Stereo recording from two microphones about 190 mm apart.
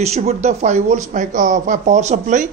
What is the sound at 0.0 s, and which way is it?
Speech, 35° right (ahead or behind).